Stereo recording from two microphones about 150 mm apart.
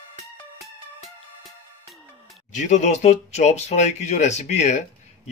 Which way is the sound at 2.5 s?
55° left (ahead or behind).